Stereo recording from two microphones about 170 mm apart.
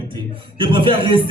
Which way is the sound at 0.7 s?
30° right (ahead or behind).